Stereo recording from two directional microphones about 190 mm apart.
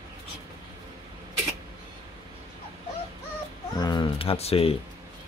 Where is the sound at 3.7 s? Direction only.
20° left (ahead or behind).